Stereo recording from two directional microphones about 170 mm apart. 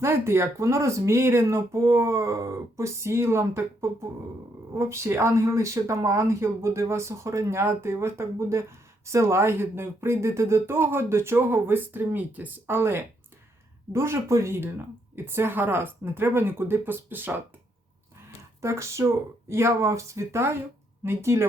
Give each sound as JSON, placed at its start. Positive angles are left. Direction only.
{"t": 0.0, "sound": "speech", "side_deg": -15}
{"t": 18.6, "sound": "speech", "side_deg": -15}